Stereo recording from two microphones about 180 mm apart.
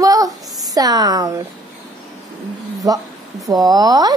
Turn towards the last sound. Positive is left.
turn(degrees=-20)  # may be behind; listen again after turning